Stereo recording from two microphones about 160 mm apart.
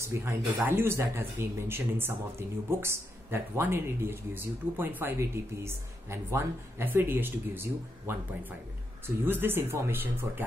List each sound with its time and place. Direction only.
0.0 s speech: 15° right (ahead or behind)